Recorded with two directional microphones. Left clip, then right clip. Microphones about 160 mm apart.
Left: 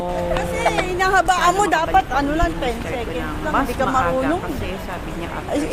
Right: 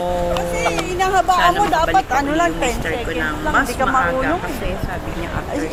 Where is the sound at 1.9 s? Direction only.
20° right (ahead or behind).